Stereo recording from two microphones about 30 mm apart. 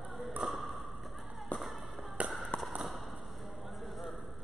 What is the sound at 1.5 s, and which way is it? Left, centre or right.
Music, left.